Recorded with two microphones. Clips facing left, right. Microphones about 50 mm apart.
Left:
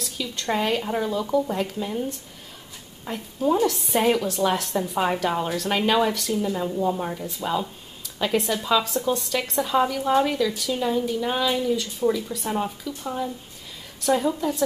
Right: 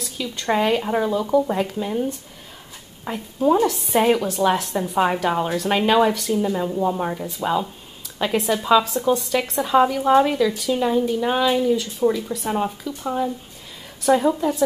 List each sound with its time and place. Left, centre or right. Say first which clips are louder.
0.0 s a woman's voice: right 2 dB; centre
7.4 s a woman's voice: right 4 dB; centre